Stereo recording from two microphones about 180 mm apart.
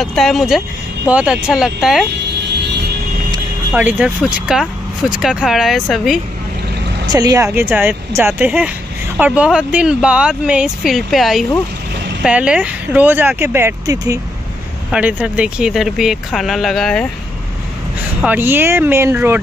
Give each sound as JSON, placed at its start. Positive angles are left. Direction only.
{"t": 0.0, "sound": "speech", "side_deg": 0}
{"t": 3.7, "sound": "speech", "side_deg": -5}
{"t": 7.1, "sound": "speech", "side_deg": -20}
{"t": 18.2, "sound": "speech", "side_deg": -10}